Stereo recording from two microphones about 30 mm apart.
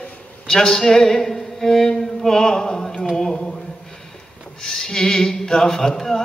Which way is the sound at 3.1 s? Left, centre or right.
Left.